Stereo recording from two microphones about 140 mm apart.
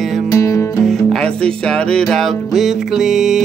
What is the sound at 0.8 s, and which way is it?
Music, centre (ahead or behind).